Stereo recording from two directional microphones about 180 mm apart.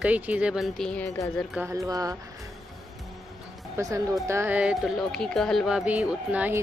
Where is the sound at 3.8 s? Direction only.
15° right (ahead or behind).